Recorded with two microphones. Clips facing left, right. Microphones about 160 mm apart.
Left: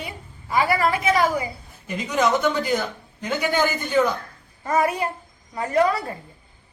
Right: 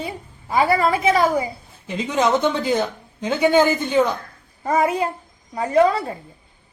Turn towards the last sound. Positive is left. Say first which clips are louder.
# right 4 dB
turn(degrees=-20)  # may be behind; listen again after turning